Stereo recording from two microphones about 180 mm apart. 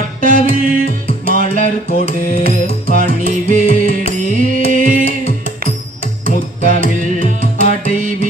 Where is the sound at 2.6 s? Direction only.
35° left (ahead or behind).